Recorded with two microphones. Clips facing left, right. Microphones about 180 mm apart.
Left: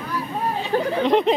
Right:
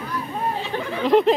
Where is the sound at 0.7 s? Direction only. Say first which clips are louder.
Left 6 dB; 40° left (ahead or behind).